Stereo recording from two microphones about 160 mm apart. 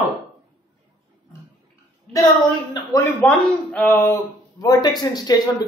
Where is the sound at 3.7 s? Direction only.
10° left (ahead or behind).